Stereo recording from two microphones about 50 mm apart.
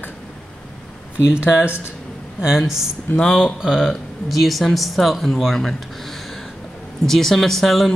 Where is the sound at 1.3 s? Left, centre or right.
Right.